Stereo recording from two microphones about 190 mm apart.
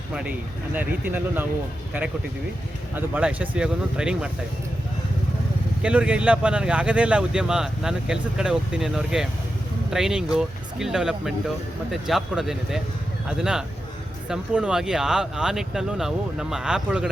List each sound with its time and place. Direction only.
0.1 s speech: 5° right (ahead or behind)
2.9 s speech: 5° right (ahead or behind)
5.8 s speech: 5° right (ahead or behind)